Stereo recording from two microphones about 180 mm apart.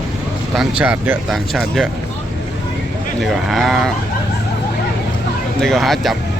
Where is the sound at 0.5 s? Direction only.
5° right (ahead or behind).